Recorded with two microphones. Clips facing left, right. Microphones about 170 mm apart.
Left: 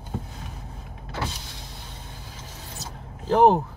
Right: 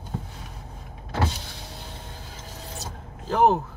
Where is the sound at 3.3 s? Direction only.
15° left (ahead or behind).